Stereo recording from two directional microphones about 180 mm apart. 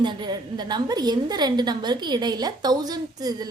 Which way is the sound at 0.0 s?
25° right (ahead or behind).